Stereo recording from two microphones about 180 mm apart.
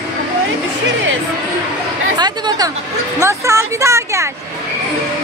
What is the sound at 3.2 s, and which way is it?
Speech, 15° right (ahead or behind).